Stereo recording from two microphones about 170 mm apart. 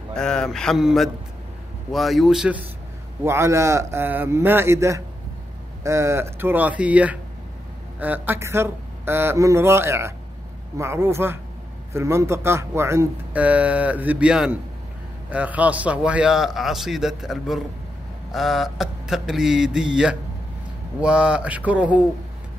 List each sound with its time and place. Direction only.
0.1 s a man's voice: 5° left (ahead or behind)
3.3 s a man's voice: 15° right (ahead or behind)